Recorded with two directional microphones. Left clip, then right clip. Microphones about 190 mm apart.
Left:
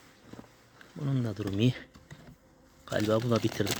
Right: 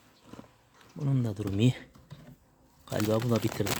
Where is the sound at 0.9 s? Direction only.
15° right (ahead or behind).